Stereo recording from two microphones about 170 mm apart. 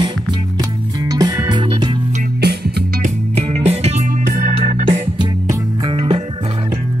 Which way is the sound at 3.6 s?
40° right (ahead or behind).